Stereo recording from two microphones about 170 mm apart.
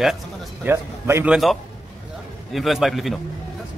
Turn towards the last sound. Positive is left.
turn(degrees=0)  # may be behind; listen again after turning